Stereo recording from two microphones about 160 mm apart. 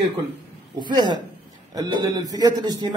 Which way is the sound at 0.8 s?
25° right (ahead or behind).